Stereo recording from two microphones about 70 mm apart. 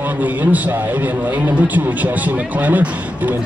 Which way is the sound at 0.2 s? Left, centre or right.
Right.